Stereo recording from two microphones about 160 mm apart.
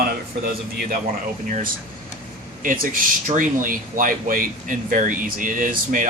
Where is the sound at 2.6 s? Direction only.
60° right (ahead or behind).